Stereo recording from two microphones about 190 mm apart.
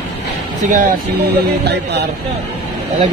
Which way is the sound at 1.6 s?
60° right (ahead or behind).